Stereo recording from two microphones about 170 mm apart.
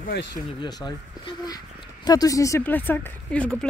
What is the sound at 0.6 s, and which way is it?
Speech, 25° left (ahead or behind).